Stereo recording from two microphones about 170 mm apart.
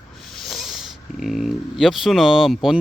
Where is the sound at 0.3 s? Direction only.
Centre (ahead or behind).